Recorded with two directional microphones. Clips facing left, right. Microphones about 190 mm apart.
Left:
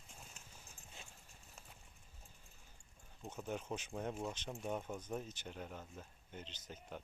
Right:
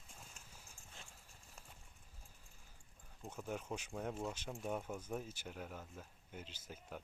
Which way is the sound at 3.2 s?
Centre (ahead or behind).